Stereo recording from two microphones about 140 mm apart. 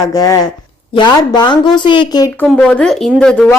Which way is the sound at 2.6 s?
10° left (ahead or behind).